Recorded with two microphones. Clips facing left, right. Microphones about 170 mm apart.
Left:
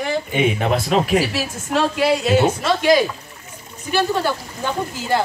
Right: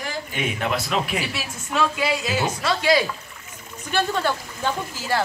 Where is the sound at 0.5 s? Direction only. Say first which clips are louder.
Left 6 dB; 40° left (ahead or behind).